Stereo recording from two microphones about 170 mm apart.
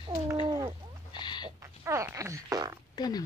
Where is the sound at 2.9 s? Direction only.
25° left (ahead or behind).